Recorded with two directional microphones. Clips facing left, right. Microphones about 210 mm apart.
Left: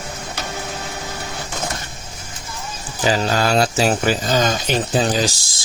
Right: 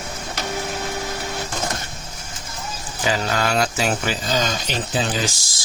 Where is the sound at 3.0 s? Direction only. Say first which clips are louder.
Left 4 dB; 35° left (ahead or behind).